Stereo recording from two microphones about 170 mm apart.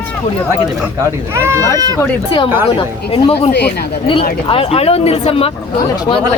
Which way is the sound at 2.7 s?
35° left (ahead or behind).